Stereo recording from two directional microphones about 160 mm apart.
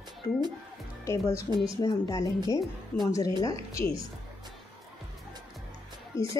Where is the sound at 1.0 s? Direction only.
20° left (ahead or behind).